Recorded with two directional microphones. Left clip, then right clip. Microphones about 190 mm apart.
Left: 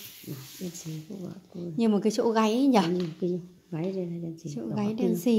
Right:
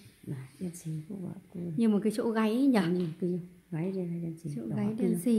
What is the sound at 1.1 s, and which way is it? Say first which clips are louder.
Speech: left 1 dB; 15° right (ahead or behind).